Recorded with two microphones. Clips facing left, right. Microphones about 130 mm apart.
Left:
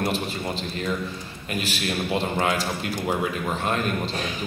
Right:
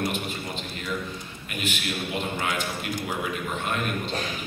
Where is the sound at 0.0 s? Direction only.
35° left (ahead or behind).